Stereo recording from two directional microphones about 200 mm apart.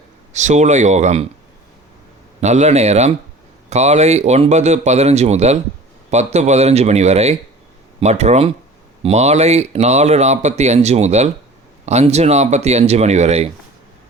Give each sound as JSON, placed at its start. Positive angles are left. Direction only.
{"t": 0.3, "sound": "speech", "side_deg": -35}
{"t": 2.4, "sound": "speech", "side_deg": -35}